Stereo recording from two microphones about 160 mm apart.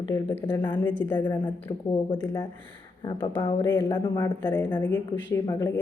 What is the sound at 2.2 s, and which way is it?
Speech, 15° left (ahead or behind).